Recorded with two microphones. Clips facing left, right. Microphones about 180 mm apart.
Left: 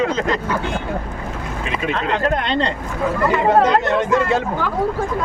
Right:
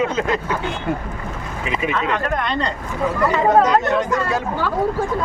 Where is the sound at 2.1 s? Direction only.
30° left (ahead or behind).